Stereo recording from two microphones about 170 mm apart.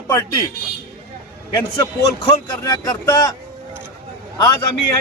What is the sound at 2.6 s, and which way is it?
Speech, 20° left (ahead or behind).